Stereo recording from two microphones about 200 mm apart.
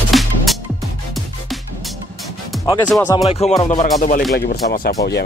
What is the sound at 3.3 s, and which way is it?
Music, 30° left (ahead or behind).